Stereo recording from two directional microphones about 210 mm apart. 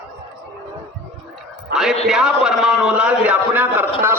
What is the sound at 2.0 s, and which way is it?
A man's voice, centre (ahead or behind).